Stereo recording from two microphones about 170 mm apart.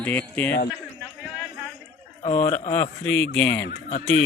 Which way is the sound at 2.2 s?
35° left (ahead or behind).